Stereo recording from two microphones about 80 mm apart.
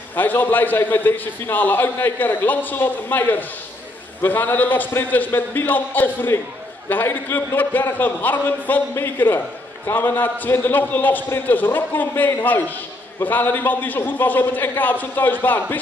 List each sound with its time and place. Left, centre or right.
0.1 s a man's voice: left